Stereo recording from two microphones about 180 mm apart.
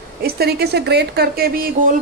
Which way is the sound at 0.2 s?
60° right (ahead or behind).